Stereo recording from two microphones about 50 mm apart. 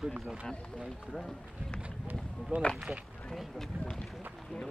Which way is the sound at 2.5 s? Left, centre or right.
Right.